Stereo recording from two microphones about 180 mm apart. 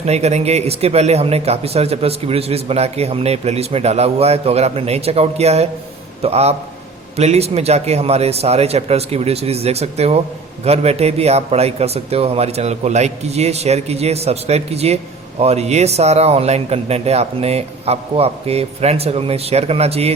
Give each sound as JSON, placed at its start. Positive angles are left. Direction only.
{"t": 0.0, "sound": "speech", "side_deg": -35}